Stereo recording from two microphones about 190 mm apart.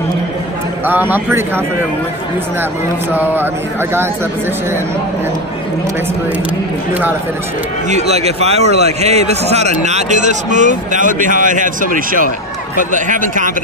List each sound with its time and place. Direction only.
0.8 s speech: 10° right (ahead or behind)
3.1 s speech: 10° right (ahead or behind)
7.9 s a man's voice: 35° right (ahead or behind)